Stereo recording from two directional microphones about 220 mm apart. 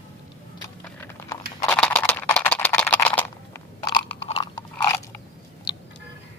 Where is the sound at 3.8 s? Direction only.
20° left (ahead or behind).